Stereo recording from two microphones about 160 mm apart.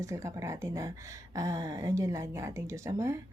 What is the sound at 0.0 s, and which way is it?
Speech, 20° right (ahead or behind).